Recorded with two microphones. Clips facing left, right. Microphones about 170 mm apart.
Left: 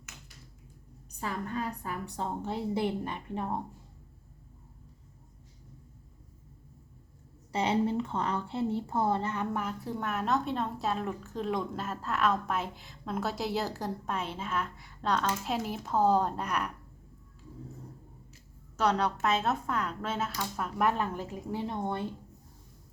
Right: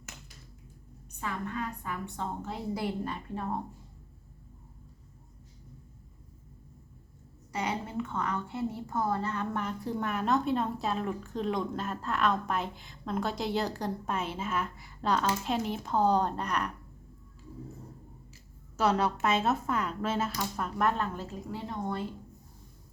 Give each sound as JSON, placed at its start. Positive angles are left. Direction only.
{"t": 1.1, "sound": "a woman's voice", "side_deg": 35}
{"t": 3.0, "sound": "a woman's voice", "side_deg": 15}
{"t": 7.5, "sound": "speech", "side_deg": 30}
{"t": 18.8, "sound": "speech", "side_deg": -5}
{"t": 21.7, "sound": "speech", "side_deg": 25}